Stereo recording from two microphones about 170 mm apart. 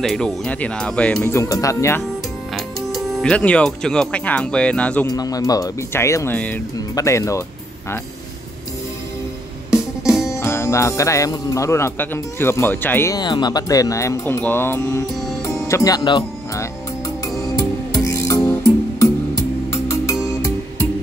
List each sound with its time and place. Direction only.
0.0 s speech: 5° left (ahead or behind)
2.5 s speech: centre (ahead or behind)
5.0 s speech: 20° left (ahead or behind)
9.7 s music: 5° right (ahead or behind)
10.3 s speech: 15° left (ahead or behind)
18.0 s music: 20° left (ahead or behind)